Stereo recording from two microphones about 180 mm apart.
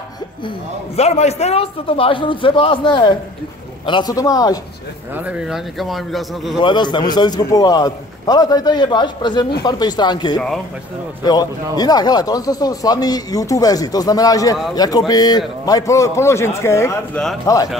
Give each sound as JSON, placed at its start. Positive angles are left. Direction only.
{"t": 0.9, "sound": "a man's voice", "side_deg": 35}
{"t": 5.1, "sound": "speech", "side_deg": -5}
{"t": 6.6, "sound": "a man's voice", "side_deg": 25}